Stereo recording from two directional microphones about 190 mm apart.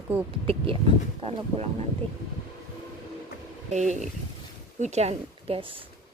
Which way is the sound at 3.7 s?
40° right (ahead or behind).